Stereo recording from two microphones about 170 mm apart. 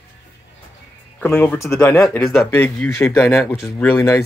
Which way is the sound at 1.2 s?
10° left (ahead or behind).